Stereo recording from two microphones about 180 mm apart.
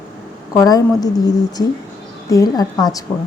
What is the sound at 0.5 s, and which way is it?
Speech, 20° left (ahead or behind).